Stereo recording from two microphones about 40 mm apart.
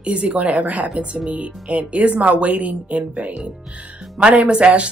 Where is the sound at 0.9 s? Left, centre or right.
Right.